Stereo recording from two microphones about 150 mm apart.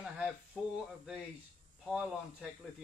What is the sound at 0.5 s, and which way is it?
Speech, centre (ahead or behind).